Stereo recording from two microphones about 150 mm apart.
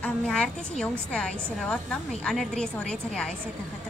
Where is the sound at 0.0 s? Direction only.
5° left (ahead or behind).